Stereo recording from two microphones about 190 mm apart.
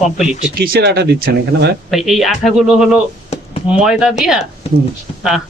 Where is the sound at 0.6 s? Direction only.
55° right (ahead or behind).